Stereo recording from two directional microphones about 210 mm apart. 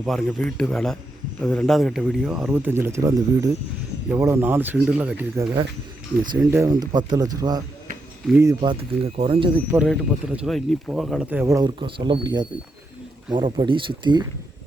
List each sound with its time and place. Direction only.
0.0 s speech: centre (ahead or behind)
8.7 s speech: 25° right (ahead or behind)
9.7 s speech: centre (ahead or behind); by 14.3 s 20° right (ahead or behind)